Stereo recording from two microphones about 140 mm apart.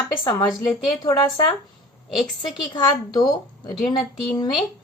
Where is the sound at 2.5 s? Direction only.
30° left (ahead or behind).